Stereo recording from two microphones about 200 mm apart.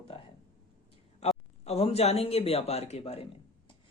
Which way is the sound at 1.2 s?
30° left (ahead or behind).